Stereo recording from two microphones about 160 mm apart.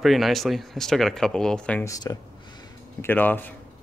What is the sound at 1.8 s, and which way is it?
Speech, 20° left (ahead or behind).